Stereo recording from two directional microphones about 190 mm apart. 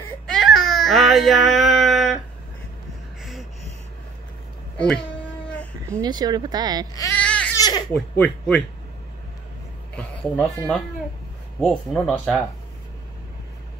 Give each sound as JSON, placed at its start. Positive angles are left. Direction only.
{"t": 0.3, "sound": "baby cry", "side_deg": 0}
{"t": 4.7, "sound": "speech", "side_deg": 5}
{"t": 5.9, "sound": "speech", "side_deg": -20}
{"t": 7.2, "sound": "baby cry", "side_deg": 5}
{"t": 7.5, "sound": "speech", "side_deg": 20}
{"t": 8.2, "sound": "speech", "side_deg": 5}
{"t": 10.2, "sound": "speech", "side_deg": 5}